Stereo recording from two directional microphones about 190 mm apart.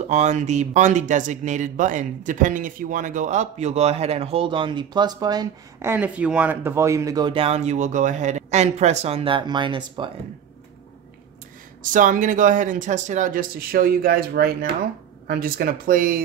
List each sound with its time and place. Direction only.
0.0 s speech: 35° right (ahead or behind)
11.8 s speech: 45° right (ahead or behind)